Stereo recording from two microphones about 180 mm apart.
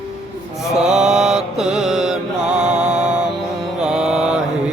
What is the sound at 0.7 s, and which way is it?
Mantra, 5° right (ahead or behind).